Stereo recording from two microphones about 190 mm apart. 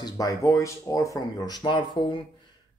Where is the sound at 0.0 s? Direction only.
20° left (ahead or behind).